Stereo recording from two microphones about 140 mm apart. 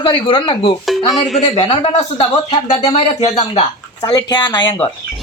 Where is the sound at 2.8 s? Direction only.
50° left (ahead or behind).